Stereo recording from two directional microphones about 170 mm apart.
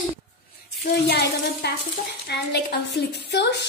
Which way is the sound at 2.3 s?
80° left.